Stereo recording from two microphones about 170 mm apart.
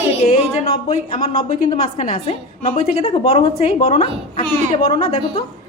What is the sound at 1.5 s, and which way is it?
Speech, 55° left (ahead or behind).